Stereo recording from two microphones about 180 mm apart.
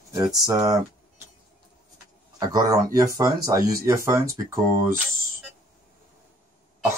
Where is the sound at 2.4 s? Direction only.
20° right (ahead or behind).